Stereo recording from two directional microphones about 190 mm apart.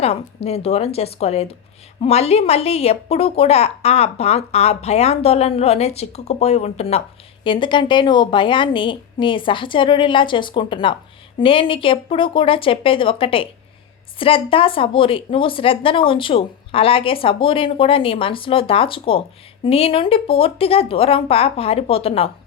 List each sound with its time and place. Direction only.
0.0 s a woman's voice: 35° left (ahead or behind)